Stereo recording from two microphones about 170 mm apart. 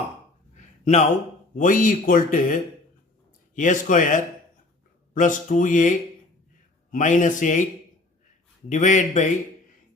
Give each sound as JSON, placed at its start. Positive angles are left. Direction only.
{"t": 0.5, "sound": "a sound", "side_deg": 40}
{"t": 1.5, "sound": "speech", "side_deg": 50}
{"t": 8.7, "sound": "speech", "side_deg": 45}